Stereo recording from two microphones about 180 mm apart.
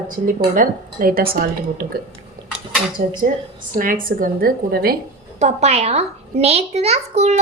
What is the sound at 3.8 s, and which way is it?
A woman's voice, 50° right (ahead or behind).